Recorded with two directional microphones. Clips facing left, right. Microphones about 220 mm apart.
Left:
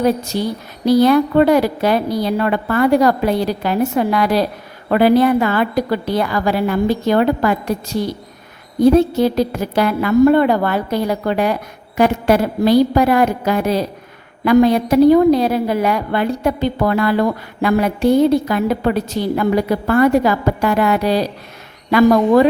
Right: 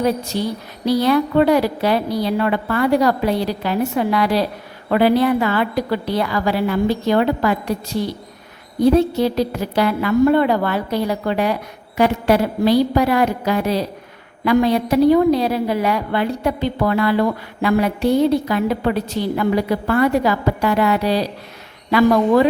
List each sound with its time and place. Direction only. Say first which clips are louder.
0.3 s a woman's voice: left 2 dB; 45° left (ahead or behind)
8.8 s a woman's voice: left 3 dB; 50° left (ahead or behind)